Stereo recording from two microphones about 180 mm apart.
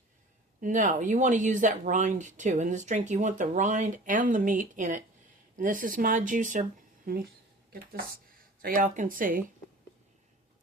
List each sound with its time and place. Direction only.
0.6 s speech: 45° right (ahead or behind)